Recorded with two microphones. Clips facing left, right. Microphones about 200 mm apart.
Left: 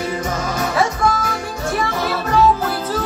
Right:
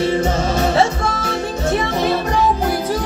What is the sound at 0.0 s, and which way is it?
Music, 30° right (ahead or behind).